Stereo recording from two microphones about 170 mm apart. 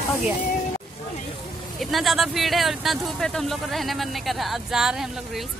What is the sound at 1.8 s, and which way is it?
Speech, centre (ahead or behind).